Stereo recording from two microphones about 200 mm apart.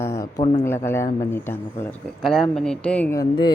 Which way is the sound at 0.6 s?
10° left (ahead or behind).